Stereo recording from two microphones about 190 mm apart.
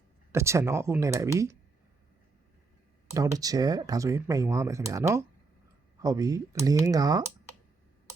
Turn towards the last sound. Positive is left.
turn(degrees=-20)  # may be behind; listen again after turning